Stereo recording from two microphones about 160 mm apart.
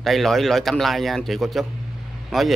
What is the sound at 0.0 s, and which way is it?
A man's voice, centre (ahead or behind).